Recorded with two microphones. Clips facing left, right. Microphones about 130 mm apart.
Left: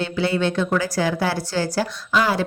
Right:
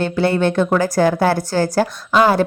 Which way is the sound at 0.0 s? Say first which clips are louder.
Right 5 dB; 50° right (ahead or behind).